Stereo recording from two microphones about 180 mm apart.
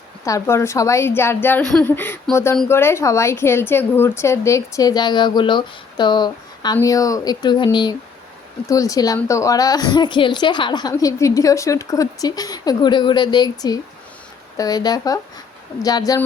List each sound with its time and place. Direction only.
0.3 s a woman's voice: 15° left (ahead or behind)